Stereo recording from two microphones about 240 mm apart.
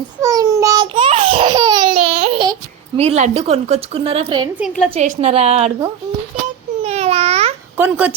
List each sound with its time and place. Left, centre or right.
0.2 s babbling: centre
3.0 s a woman's voice: right
4.5 s a woman's voice: centre
4.9 s a woman's voice: right
6.8 s babbling: right
7.8 s a woman's voice: centre